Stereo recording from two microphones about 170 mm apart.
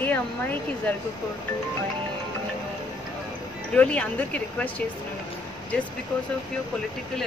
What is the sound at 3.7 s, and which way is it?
Speech, 5° left (ahead or behind).